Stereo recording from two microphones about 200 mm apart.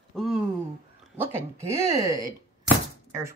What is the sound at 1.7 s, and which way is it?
Speech, 15° right (ahead or behind).